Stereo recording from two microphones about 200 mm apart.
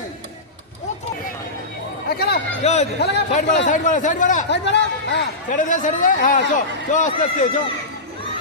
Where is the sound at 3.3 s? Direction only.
35° left (ahead or behind).